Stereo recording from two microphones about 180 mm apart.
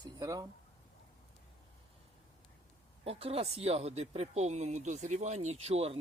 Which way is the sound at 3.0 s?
35° right (ahead or behind).